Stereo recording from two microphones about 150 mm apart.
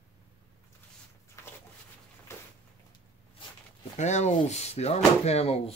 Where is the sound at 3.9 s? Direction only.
50° left (ahead or behind).